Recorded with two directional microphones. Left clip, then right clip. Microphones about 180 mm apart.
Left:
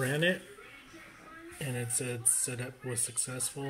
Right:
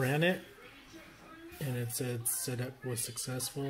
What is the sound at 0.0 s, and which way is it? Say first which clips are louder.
Speech: left 1 dB; 5° right (ahead or behind).